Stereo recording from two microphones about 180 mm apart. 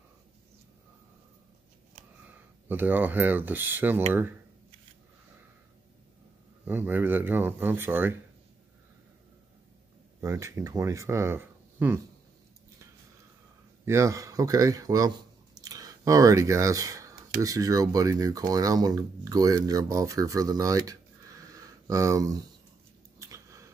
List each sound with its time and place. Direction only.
2.7 s speech: 10° right (ahead or behind)
6.6 s speech: 10° right (ahead or behind)
10.2 s speech: 15° right (ahead or behind)
13.8 s speech: 15° right (ahead or behind)
23.1 s a sound: 15° right (ahead or behind)